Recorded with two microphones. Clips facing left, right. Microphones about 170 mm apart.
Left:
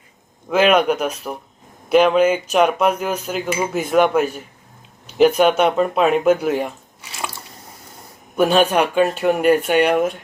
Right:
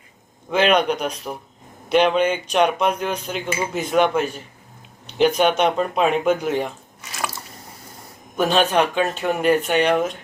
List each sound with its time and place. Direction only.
0.5 s cutlery: 5° left (ahead or behind)
5.0 s speech: 5° left (ahead or behind)
7.1 s drip: 30° left (ahead or behind)
8.4 s cutlery: 10° left (ahead or behind)